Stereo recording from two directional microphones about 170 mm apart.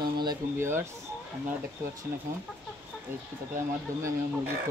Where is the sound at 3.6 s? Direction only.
15° right (ahead or behind).